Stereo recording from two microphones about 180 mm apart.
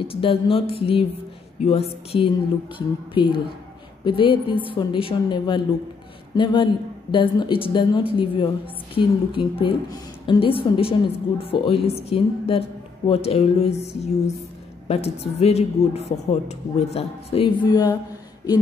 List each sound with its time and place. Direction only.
0.0 s a woman's voice: 30° left (ahead or behind)
17.6 s speech: 20° left (ahead or behind)